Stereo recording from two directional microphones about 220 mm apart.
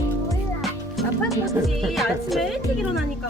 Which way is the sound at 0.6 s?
Centre (ahead or behind).